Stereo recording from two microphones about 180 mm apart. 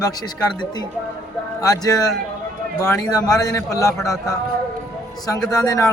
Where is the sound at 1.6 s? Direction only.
20° left (ahead or behind).